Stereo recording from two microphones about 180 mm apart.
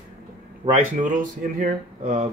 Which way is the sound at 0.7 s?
45° right (ahead or behind).